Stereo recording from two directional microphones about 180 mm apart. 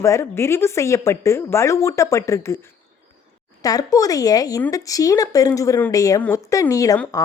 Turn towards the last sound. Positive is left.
turn(degrees=20)  # may be behind; listen again after turning